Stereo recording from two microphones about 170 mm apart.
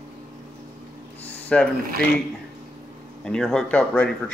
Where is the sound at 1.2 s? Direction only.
5° left (ahead or behind).